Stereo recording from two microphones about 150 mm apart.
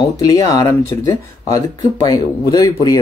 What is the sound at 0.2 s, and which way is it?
Speech, 25° left (ahead or behind).